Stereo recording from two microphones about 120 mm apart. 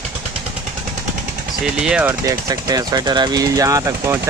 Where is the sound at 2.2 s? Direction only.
30° right (ahead or behind).